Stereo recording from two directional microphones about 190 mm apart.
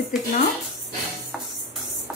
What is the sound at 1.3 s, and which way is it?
Music, centre (ahead or behind).